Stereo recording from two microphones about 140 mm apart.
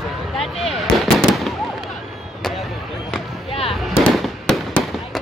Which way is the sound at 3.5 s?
45° left (ahead or behind).